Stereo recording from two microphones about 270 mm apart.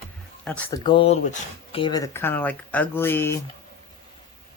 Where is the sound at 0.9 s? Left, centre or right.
Left.